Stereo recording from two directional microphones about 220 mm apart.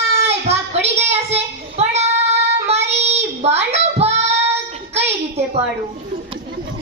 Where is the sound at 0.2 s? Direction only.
30° right (ahead or behind).